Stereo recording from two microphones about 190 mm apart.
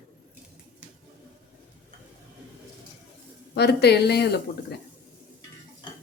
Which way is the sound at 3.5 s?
60° left (ahead or behind).